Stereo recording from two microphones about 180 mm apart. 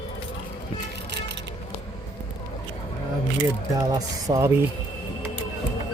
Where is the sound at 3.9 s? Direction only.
20° right (ahead or behind).